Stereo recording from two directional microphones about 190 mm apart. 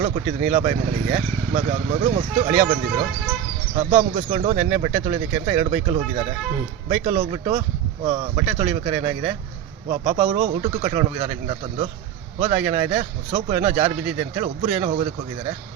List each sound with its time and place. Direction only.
0.0 s speech: 40° right (ahead or behind)
3.8 s speech: 35° right (ahead or behind)